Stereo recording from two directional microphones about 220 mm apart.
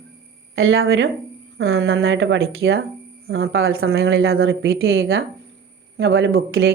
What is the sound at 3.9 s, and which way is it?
Speech, 45° right (ahead or behind).